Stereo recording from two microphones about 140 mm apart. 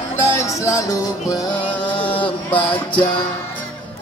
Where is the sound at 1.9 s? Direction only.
40° left (ahead or behind).